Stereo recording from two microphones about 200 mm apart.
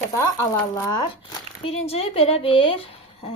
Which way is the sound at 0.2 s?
15° left (ahead or behind).